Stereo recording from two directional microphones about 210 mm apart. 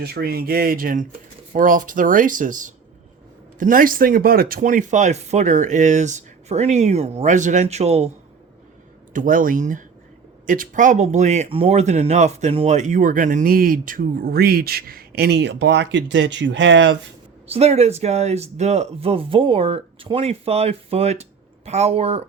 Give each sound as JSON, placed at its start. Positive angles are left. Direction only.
{"t": 0.0, "sound": "speech", "side_deg": -50}
{"t": 9.1, "sound": "speech", "side_deg": -40}
{"t": 17.5, "sound": "speech", "side_deg": -30}